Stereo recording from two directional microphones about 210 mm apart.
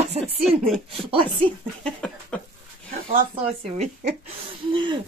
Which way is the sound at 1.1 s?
25° right (ahead or behind).